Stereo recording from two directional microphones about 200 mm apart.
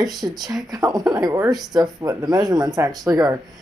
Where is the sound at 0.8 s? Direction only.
Centre (ahead or behind).